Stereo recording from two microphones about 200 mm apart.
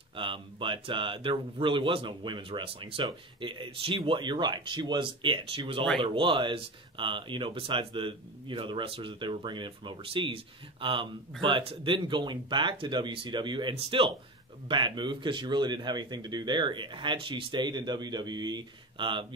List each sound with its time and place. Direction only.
0.1 s speech: 25° right (ahead or behind)